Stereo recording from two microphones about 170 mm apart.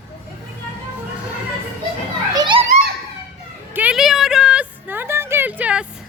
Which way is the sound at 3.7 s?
5° right (ahead or behind).